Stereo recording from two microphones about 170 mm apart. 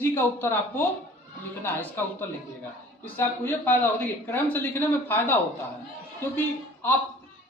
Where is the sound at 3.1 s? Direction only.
15° left (ahead or behind).